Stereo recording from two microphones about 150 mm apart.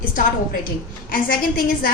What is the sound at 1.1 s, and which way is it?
Speech, 75° left (ahead or behind).